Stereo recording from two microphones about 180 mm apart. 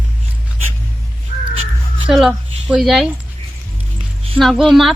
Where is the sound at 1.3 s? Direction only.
50° left (ahead or behind).